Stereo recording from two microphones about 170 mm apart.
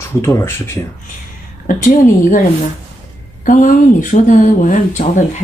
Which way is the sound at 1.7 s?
55° left (ahead or behind).